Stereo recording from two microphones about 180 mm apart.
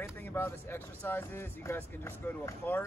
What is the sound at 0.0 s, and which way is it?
Speech, 10° left (ahead or behind).